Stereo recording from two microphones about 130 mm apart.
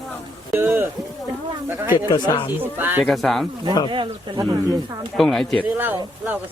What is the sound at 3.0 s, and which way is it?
Speech, centre (ahead or behind).